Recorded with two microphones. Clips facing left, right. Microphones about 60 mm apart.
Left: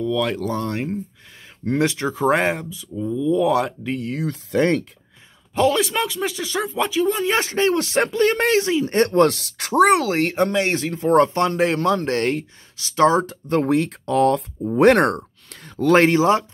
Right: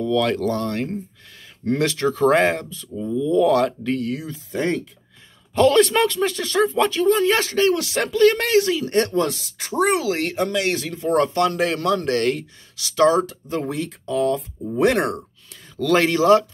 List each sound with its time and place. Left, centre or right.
0.0 s speech: centre
4.2 s speech: left
5.5 s speech: centre
7.2 s speech: left
9.1 s speech: left
10.0 s speech: left
13.5 s speech: left
15.8 s speech: left